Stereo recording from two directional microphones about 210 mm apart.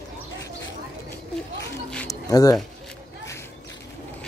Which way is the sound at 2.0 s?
15° left (ahead or behind).